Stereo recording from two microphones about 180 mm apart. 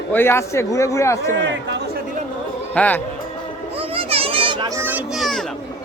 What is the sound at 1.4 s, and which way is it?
Speech, 80° right.